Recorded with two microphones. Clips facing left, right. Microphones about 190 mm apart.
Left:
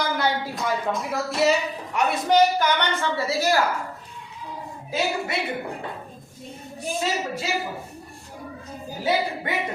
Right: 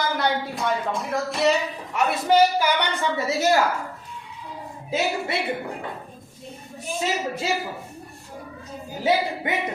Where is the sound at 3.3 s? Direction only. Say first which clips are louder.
Right 2 dB; 20° right (ahead or behind).